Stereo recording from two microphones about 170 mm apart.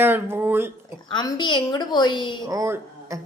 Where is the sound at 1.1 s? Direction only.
25° left (ahead or behind).